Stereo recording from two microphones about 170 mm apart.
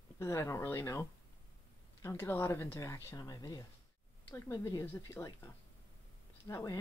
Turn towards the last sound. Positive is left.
turn(degrees=20)  # may be behind; listen again after turning